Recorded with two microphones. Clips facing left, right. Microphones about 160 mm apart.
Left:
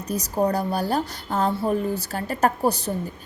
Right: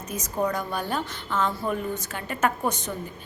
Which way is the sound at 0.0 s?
35° left (ahead or behind).